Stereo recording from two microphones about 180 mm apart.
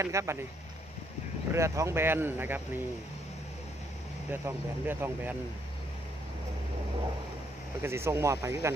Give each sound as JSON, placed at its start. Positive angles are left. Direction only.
{"t": 0.0, "sound": "speech", "side_deg": -15}
{"t": 1.5, "sound": "speech", "side_deg": -15}
{"t": 4.3, "sound": "speech", "side_deg": -10}
{"t": 7.8, "sound": "speech", "side_deg": -15}